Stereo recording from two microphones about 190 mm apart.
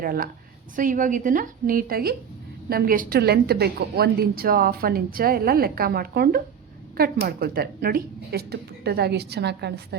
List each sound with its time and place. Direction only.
0.0 s a woman's voice: 50° right (ahead or behind)